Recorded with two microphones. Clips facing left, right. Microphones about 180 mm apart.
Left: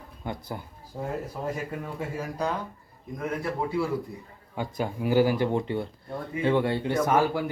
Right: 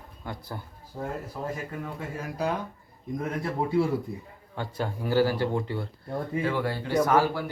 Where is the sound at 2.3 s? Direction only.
10° right (ahead or behind).